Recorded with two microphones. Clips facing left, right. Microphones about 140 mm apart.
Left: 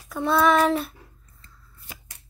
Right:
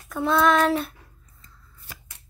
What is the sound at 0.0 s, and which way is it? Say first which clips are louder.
Child singing: even; centre (ahead or behind).